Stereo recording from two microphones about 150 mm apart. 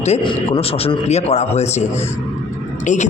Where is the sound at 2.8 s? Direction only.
50° left (ahead or behind).